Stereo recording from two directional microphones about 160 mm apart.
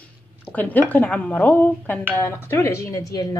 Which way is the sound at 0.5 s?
10° left (ahead or behind).